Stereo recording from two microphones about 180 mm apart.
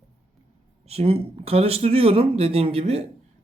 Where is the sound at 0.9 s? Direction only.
35° right (ahead or behind).